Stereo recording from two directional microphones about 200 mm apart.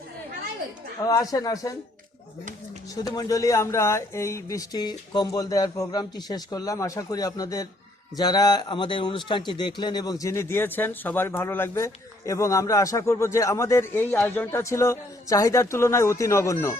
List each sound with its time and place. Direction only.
1.0 s a man's voice: 20° left (ahead or behind)
2.9 s a man's voice: 20° left (ahead or behind)